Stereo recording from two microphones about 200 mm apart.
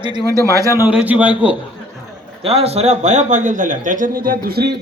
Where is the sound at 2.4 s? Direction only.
30° right (ahead or behind).